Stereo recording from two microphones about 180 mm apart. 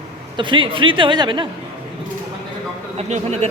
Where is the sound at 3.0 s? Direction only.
40° right (ahead or behind).